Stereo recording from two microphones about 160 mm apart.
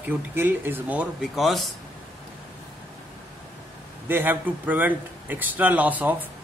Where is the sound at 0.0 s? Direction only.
15° right (ahead or behind).